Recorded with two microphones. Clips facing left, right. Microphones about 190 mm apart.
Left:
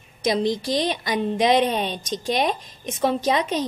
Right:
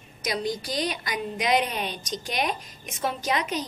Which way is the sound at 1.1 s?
25° left (ahead or behind).